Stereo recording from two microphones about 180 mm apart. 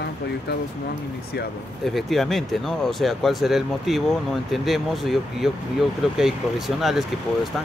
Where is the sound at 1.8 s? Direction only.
Centre (ahead or behind).